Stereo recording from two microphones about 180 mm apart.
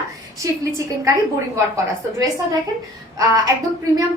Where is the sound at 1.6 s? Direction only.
20° right (ahead or behind).